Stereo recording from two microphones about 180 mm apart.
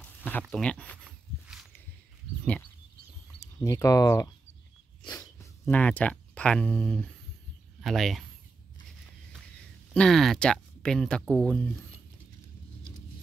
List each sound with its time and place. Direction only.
0.0 s speech: 10° left (ahead or behind)
1.0 s a sound: 5° right (ahead or behind)
3.3 s speech: 20° left (ahead or behind)
5.0 s a sound: 20° left (ahead or behind)
7.8 s speech: centre (ahead or behind)
9.9 s speech: centre (ahead or behind)